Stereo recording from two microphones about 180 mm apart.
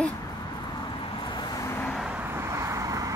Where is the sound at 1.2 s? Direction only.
25° left (ahead or behind).